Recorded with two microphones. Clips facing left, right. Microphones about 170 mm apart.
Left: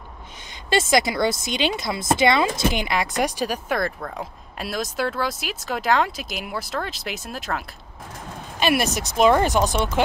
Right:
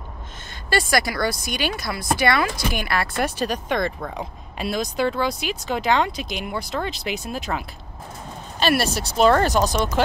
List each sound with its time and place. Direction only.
0.7 s speech: 20° left (ahead or behind); by 7.6 s centre (ahead or behind)
8.5 s speech: 15° left (ahead or behind)
8.8 s speech: 35° right (ahead or behind)
9.1 s speech: 10° left (ahead or behind)